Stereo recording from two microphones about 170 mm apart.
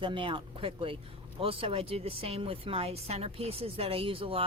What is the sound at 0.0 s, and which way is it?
Speech, 30° right (ahead or behind).